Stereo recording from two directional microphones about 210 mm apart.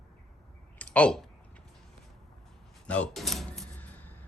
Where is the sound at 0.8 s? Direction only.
5° left (ahead or behind).